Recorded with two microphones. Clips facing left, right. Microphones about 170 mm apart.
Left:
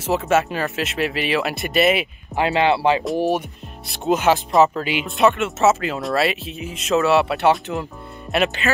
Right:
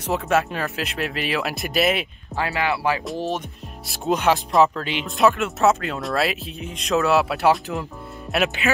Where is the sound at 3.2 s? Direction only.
15° left (ahead or behind).